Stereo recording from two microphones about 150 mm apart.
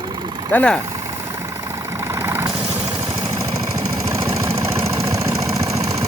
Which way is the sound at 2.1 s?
20° right (ahead or behind).